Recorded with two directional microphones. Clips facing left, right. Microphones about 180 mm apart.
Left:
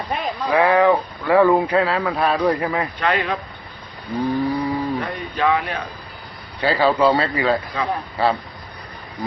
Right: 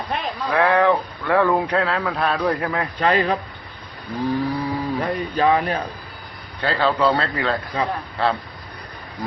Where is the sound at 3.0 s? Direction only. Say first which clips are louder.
Right 4 dB; 35° right (ahead or behind).